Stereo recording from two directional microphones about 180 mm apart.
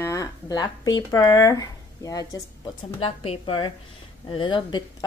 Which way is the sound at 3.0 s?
30° left (ahead or behind).